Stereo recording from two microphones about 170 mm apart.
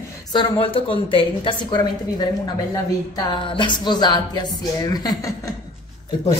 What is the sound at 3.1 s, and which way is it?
Speech, 30° left (ahead or behind).